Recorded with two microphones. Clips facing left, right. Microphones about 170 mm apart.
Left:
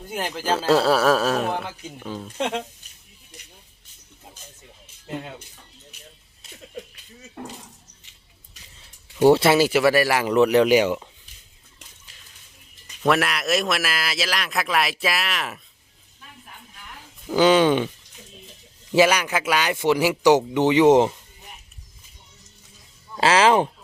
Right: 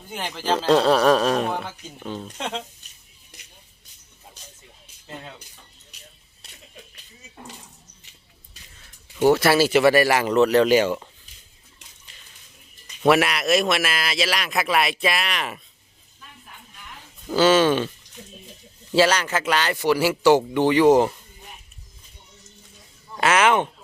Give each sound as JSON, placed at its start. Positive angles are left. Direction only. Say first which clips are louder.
{"t": 0.1, "sound": "a man's voice", "louder": "even", "side_deg": 5}
{"t": 9.2, "sound": "speech", "louder": "left 2 dB", "side_deg": 25}
{"t": 9.7, "sound": "speech", "louder": "right 2 dB", "side_deg": 5}
{"t": 13.1, "sound": "a man's voice", "louder": "right 3 dB", "side_deg": 0}
{"t": 17.2, "sound": "speech", "louder": "left 1 dB", "side_deg": 15}
{"t": 18.9, "sound": "speech", "louder": "left 1 dB", "side_deg": 10}
{"t": 23.1, "sound": "speech", "louder": "left 2 dB", "side_deg": 30}